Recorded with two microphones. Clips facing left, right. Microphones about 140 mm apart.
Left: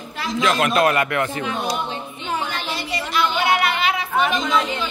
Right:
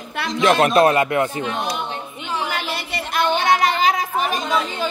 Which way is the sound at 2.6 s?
60° right (ahead or behind).